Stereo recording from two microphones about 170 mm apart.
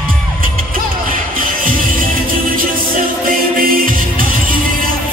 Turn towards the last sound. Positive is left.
turn(degrees=-55)  # may be behind; listen again after turning